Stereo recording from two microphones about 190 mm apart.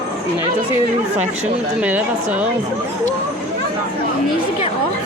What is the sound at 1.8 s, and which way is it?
Speech, 5° right (ahead or behind).